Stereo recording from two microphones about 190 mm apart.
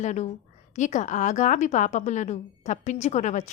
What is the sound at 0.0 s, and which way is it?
A woman's voice, 40° left (ahead or behind).